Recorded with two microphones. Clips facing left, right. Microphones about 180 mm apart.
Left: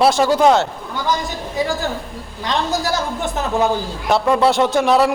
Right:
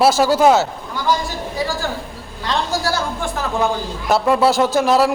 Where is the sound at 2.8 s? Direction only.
20° left (ahead or behind).